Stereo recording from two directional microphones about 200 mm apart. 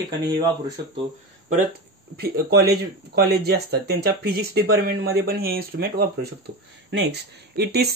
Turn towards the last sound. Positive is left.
turn(degrees=-55)  # may be behind; listen again after turning